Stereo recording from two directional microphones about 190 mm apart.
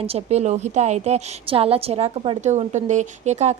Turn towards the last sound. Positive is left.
turn(degrees=-35)  # may be behind; listen again after turning